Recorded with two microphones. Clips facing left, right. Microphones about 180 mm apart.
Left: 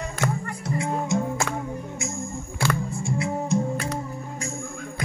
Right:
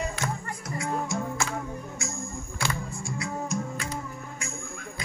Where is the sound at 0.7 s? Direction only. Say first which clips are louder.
Left 5 dB; 25° left (ahead or behind).